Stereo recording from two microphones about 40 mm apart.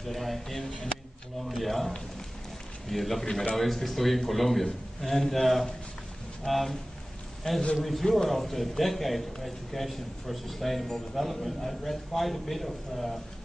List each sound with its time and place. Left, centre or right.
0.0 s a man's voice: centre
0.7 s speech: left
1.4 s a man's voice: centre